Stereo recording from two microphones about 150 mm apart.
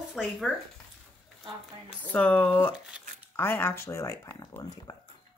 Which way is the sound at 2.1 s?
10° left (ahead or behind).